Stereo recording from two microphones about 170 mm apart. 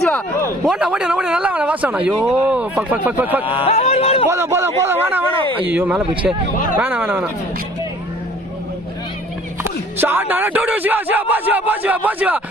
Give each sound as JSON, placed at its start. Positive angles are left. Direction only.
{"t": 0.0, "sound": "a sound", "side_deg": 10}
{"t": 0.6, "sound": "speech", "side_deg": -5}
{"t": 3.4, "sound": "speech", "side_deg": 30}
{"t": 4.3, "sound": "speech", "side_deg": -15}
{"t": 10.0, "sound": "speech", "side_deg": -10}